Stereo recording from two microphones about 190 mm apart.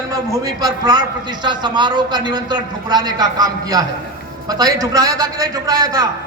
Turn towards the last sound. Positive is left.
turn(degrees=-20)  # may be behind; listen again after turning